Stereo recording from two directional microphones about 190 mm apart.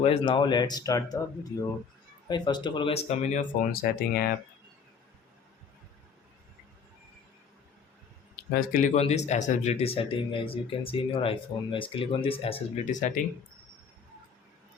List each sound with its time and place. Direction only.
0.0 s speech: 30° left (ahead or behind)
2.2 s speech: 20° left (ahead or behind); by 4.3 s 50° left (ahead or behind)
8.5 s speech: 45° left (ahead or behind)